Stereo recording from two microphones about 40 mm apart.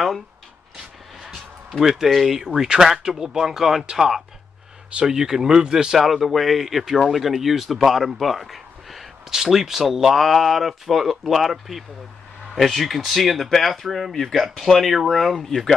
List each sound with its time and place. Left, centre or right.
1.3 s speech: centre
2.4 s speech: centre
5.9 s speech: centre
9.3 s speech: centre